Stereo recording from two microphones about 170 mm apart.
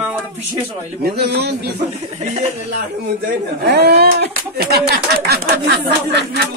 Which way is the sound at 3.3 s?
75° right (ahead or behind).